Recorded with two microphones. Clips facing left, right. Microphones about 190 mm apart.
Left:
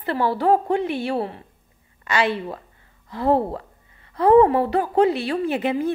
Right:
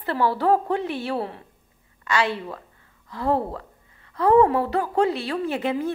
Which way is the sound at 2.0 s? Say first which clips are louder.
Left 2 dB; 20° left (ahead or behind).